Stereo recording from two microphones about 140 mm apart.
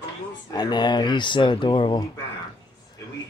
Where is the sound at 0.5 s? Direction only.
30° left (ahead or behind).